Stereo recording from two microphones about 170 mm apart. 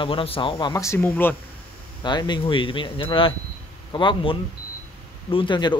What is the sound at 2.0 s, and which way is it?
Speech, 25° left (ahead or behind).